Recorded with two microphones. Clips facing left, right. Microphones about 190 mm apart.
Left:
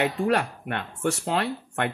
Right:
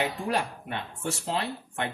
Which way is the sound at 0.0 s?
65° left (ahead or behind).